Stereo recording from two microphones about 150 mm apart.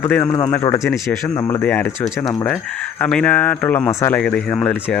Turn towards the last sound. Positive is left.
turn(degrees=10)  # may be behind; listen again after turning